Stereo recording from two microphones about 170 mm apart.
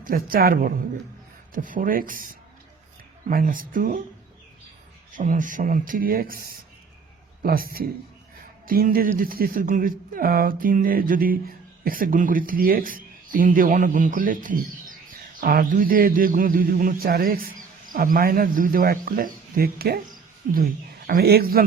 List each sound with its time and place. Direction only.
0.0 s speech: 60° right (ahead or behind)
5.1 s speech: 50° right (ahead or behind)